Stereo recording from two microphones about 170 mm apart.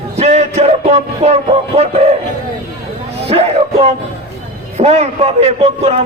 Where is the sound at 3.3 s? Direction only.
35° right (ahead or behind).